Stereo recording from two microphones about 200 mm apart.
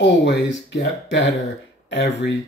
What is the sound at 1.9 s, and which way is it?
Speech, 60° left (ahead or behind).